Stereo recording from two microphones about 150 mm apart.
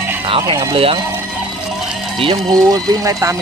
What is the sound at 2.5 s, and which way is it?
Speech, 25° right (ahead or behind).